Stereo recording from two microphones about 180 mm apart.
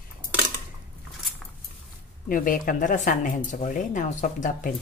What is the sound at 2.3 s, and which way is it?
A woman's voice, 50° left (ahead or behind).